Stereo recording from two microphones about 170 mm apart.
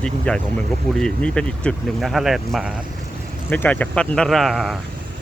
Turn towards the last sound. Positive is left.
turn(degrees=0)  # may be behind; listen again after turning